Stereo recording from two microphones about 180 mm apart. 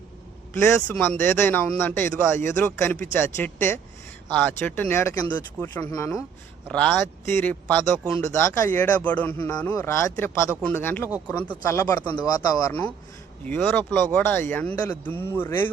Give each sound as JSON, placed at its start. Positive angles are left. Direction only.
{"t": 0.9, "sound": "speech", "side_deg": 10}